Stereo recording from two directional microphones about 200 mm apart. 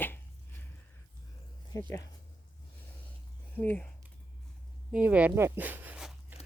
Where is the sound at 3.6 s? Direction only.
10° left (ahead or behind).